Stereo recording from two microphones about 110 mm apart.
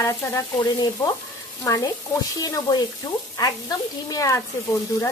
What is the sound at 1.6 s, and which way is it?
Speech, 30° left (ahead or behind).